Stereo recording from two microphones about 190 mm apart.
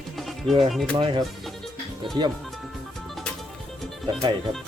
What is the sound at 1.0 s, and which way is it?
Speech, 25° right (ahead or behind).